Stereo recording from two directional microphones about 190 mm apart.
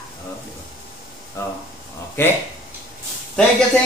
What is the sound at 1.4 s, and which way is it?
Speech, 15° left (ahead or behind).